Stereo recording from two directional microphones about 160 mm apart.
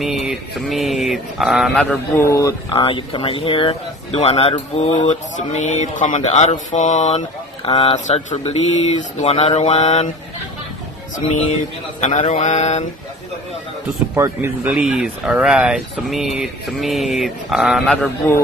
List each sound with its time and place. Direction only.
0.0 s speech: centre (ahead or behind)
2.1 s speech: 20° left (ahead or behind)
2.7 s speech: 30° left (ahead or behind)
7.6 s speech: 35° left (ahead or behind)
12.0 s speech: 45° left (ahead or behind)
14.1 s speech: 15° right (ahead or behind)
17.9 s a man's voice: 10° left (ahead or behind)